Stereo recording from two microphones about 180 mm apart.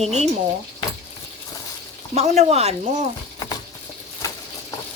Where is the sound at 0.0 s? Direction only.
40° right (ahead or behind).